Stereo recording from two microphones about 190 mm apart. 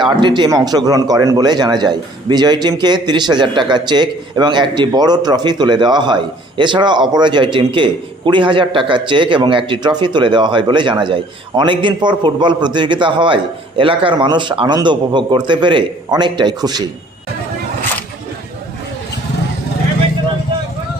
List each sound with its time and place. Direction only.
0.0 s a man's voice: 25° right (ahead or behind)